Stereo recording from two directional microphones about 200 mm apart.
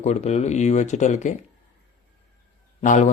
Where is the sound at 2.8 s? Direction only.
35° left (ahead or behind).